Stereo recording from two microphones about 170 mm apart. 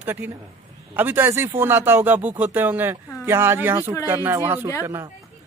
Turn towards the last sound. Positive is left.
turn(degrees=-15)  # may be behind; listen again after turning